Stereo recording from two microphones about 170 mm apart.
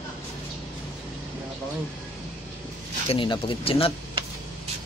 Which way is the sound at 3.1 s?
30° left (ahead or behind).